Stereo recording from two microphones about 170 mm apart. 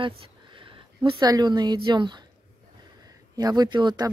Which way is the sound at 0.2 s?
30° right (ahead or behind).